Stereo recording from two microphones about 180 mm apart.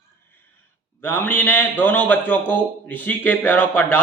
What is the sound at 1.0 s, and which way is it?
Speech, 10° left (ahead or behind).